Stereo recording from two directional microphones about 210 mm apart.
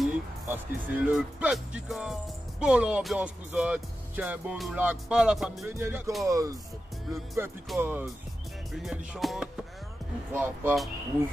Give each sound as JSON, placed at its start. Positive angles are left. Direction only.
{"t": 0.0, "sound": "speech", "side_deg": -10}
{"t": 7.7, "sound": "speech", "side_deg": -5}